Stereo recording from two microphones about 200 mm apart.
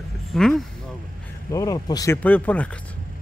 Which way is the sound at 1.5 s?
15° left (ahead or behind).